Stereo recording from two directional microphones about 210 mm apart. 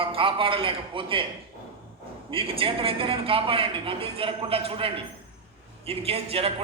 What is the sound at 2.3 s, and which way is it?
A man's voice, 25° right (ahead or behind).